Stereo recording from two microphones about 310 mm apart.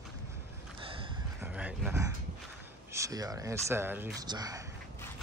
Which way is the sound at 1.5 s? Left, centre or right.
Centre.